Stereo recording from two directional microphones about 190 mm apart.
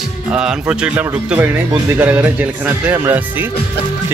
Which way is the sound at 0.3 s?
5° right (ahead or behind).